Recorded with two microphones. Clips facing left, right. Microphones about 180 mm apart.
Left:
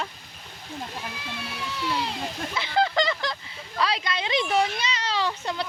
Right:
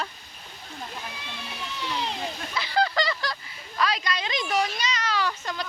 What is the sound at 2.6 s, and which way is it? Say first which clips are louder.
Speech: left 1 dB; 20° left (ahead or behind).